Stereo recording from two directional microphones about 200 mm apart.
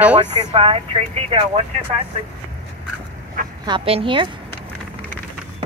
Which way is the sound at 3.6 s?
25° right (ahead or behind).